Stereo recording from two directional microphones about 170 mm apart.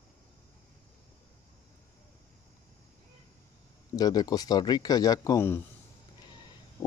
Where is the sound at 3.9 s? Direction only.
25° left (ahead or behind).